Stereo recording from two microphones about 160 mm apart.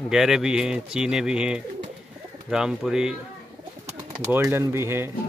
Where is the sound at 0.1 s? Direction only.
5° right (ahead or behind).